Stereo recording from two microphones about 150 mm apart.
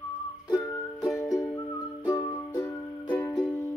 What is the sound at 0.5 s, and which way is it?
Music, 15° left (ahead or behind).